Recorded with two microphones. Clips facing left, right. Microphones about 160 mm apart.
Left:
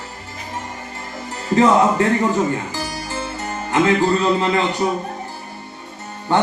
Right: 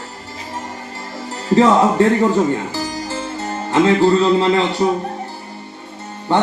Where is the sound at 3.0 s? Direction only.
30° right (ahead or behind).